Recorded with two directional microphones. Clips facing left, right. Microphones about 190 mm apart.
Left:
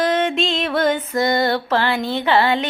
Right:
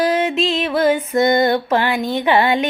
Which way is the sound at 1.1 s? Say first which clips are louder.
Right 4 dB; 20° right (ahead or behind).